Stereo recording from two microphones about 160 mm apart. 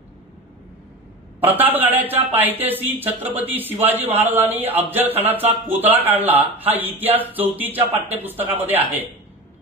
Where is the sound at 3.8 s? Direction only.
40° right (ahead or behind).